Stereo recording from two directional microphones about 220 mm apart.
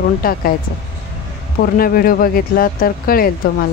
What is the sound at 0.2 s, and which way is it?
Speech, 40° left (ahead or behind).